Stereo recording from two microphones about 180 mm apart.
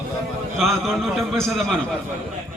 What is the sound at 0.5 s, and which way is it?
A man's voice, centre (ahead or behind).